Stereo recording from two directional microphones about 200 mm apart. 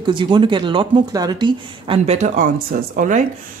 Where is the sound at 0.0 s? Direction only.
25° right (ahead or behind).